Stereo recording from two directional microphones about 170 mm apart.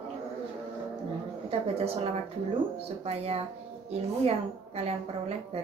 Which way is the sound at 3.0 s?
35° right (ahead or behind).